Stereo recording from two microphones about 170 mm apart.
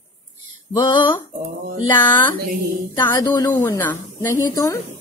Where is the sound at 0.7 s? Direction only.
25° left (ahead or behind).